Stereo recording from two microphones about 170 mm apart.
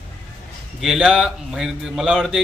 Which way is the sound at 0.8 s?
5° right (ahead or behind).